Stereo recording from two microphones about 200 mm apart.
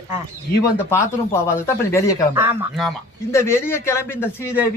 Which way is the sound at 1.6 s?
15° left (ahead or behind).